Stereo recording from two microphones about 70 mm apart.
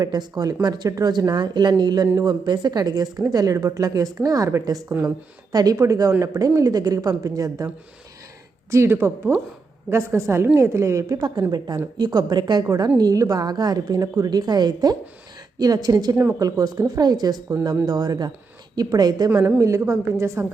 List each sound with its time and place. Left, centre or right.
0.0 s speech: right
0.9 s speech: right
1.3 s speech: right
5.0 s speech: right
8.7 s a woman's voice: right
11.2 s speech: right
13.0 s a woman's voice: right
19.5 s a woman's voice: right